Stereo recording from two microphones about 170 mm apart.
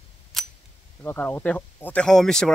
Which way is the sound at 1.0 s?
10° left (ahead or behind).